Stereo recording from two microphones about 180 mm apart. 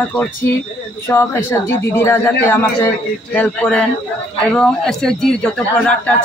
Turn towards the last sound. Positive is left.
turn(degrees=5)  # may be behind; listen again after turning